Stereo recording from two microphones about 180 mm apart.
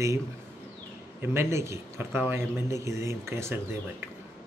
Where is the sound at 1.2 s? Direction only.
15° right (ahead or behind).